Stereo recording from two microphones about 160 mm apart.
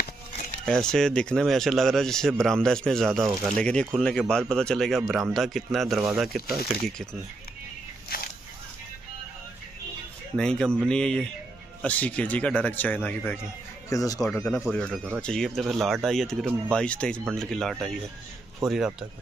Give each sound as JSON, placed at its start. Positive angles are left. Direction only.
{"t": 0.9, "sound": "speech", "side_deg": 5}
{"t": 8.1, "sound": "a sound", "side_deg": 70}
{"t": 10.3, "sound": "speech", "side_deg": 5}
{"t": 14.3, "sound": "speech", "side_deg": 5}